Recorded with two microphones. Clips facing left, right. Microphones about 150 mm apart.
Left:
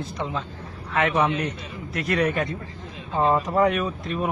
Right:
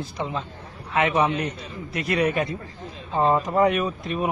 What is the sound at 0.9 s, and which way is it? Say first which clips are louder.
A man's voice: right 1 dB; 5° right (ahead or behind).